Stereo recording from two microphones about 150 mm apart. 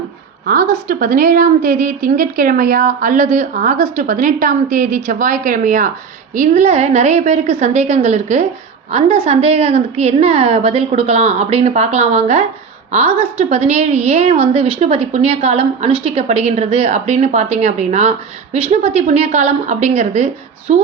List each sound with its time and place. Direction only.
0.4 s a woman's voice: 70° right (ahead or behind); by 20.7 s 50° right (ahead or behind)